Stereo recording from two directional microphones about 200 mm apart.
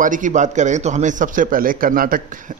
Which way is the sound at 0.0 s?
40° right (ahead or behind).